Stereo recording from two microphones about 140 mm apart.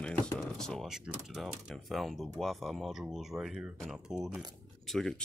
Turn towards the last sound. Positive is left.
turn(degrees=5)  # may be behind; listen again after turning